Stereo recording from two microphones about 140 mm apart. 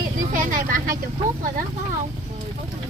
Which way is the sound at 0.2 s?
70° right (ahead or behind).